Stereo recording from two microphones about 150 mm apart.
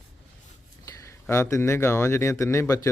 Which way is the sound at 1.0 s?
20° left (ahead or behind).